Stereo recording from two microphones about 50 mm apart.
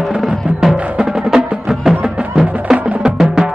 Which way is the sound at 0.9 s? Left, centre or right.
Centre.